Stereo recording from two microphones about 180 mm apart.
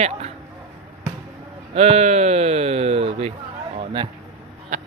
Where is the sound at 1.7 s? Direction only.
35° right (ahead or behind).